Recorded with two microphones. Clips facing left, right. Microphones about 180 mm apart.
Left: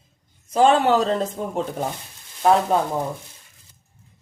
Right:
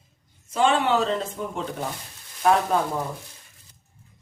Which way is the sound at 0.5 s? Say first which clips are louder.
Left 4 dB; 40° left (ahead or behind).